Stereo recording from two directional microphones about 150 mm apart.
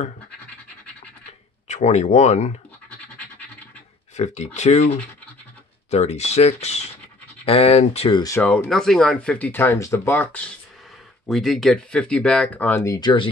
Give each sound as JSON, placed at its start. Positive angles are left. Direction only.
{"t": 1.7, "sound": "speech", "side_deg": 50}
{"t": 4.2, "sound": "speech", "side_deg": 50}
{"t": 8.4, "sound": "speech", "side_deg": 10}
{"t": 11.2, "sound": "speech", "side_deg": 0}